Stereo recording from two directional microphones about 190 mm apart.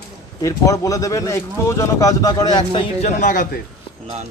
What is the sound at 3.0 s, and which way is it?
Speech, 45° left (ahead or behind).